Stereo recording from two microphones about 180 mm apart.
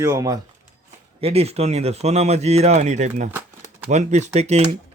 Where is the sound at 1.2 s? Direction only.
35° right (ahead or behind).